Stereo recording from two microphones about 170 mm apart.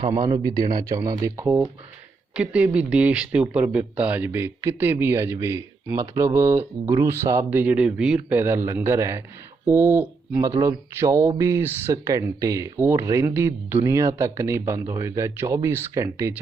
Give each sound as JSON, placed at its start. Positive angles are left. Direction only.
{"t": 0.3, "sound": "speech", "side_deg": -20}